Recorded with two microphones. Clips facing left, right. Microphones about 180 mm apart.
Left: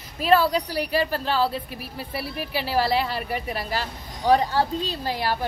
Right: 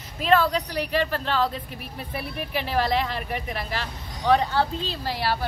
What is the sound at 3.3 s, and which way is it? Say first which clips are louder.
Speech: left 2 dB; 35° left (ahead or behind).